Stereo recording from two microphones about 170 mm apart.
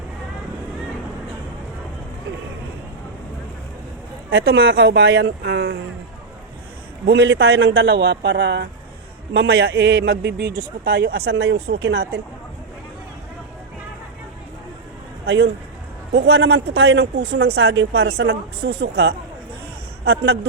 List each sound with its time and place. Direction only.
4.3 s speech: 80° right
7.1 s speech: 90° right
10.8 s speech: 70° right (ahead or behind)
16.1 s speech: 85° right
18.6 s speech: 70° right (ahead or behind)